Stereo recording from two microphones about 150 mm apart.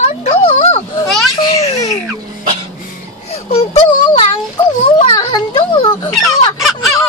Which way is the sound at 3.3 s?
40° left (ahead or behind).